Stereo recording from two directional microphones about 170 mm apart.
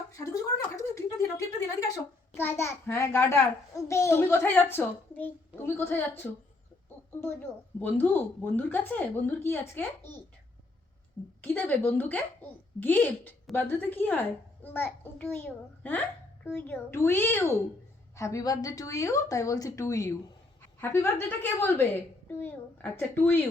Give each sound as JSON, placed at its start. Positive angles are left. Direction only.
{"t": 0.4, "sound": "a sound", "side_deg": 20}
{"t": 2.4, "sound": "a child's voice", "side_deg": 15}
{"t": 7.8, "sound": "a child's voice", "side_deg": 10}
{"t": 11.4, "sound": "a child's voice", "side_deg": 10}